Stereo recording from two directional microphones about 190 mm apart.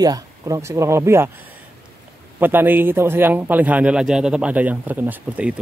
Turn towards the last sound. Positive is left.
turn(degrees=-10)  # may be behind; listen again after turning